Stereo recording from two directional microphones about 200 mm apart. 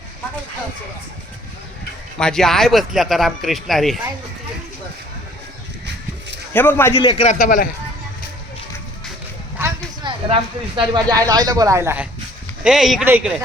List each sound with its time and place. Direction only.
2.1 s speech: 5° left (ahead or behind)
6.5 s a man's voice: 10° left (ahead or behind)
7.0 s a man's voice: 30° left (ahead or behind)
7.3 s speech: 45° left (ahead or behind)
9.6 s a sound: 10° right (ahead or behind)
10.0 s a sound: 25° right (ahead or behind)
10.9 s speech: 20° right (ahead or behind)
12.6 s speech: centre (ahead or behind)